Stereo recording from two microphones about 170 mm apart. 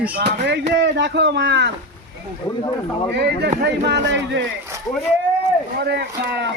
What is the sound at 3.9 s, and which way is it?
Speech, 90° right.